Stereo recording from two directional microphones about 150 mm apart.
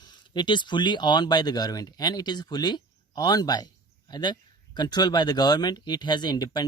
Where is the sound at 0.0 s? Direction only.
30° left (ahead or behind).